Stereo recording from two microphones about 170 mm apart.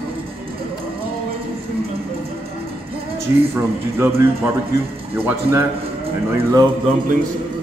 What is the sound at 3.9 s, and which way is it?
A man's voice, 15° right (ahead or behind).